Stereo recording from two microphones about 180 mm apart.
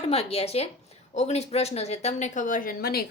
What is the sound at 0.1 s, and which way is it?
A woman's voice, 35° left (ahead or behind).